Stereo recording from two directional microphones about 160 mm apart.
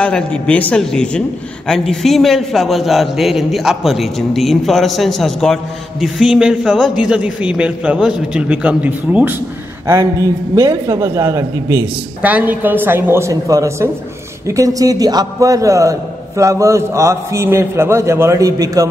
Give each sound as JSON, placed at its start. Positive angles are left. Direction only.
{"t": 0.0, "sound": "a man's voice", "side_deg": 10}